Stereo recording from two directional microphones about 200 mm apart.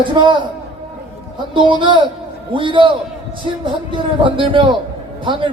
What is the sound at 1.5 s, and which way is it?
A man's voice, 25° right (ahead or behind).